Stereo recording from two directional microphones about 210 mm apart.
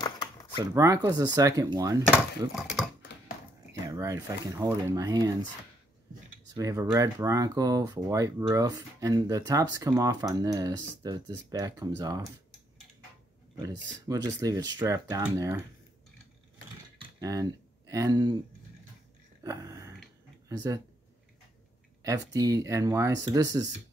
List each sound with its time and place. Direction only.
0.0 s a sound: 20° left (ahead or behind)
0.6 s speech: 15° right (ahead or behind)
2.5 s typing: centre (ahead or behind)
3.8 s speech: 15° right (ahead or behind)
6.5 s speech: 15° right (ahead or behind)
13.6 s speech: 15° right (ahead or behind)
17.0 s a sound: 15° right (ahead or behind)
19.4 s a sound: 15° right (ahead or behind)
20.4 s speech: 15° right (ahead or behind)
22.0 s speech: 15° right (ahead or behind)